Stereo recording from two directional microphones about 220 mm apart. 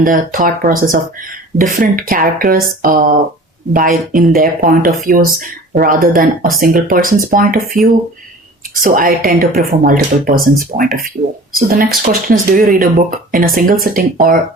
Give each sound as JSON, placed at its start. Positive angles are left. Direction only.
{"t": 0.0, "sound": "speech", "side_deg": -40}
{"t": 8.8, "sound": "speech", "side_deg": -40}